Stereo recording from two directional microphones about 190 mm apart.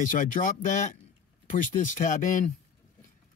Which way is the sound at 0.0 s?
45° left (ahead or behind).